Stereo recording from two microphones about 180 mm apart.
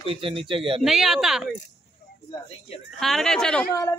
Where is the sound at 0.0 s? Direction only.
30° right (ahead or behind).